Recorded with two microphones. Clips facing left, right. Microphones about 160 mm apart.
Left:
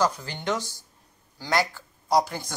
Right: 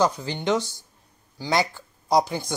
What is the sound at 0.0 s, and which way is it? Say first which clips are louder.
Speech: right 3 dB; 20° right (ahead or behind).